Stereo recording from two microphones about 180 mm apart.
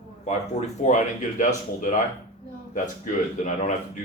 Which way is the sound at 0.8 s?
40° left (ahead or behind).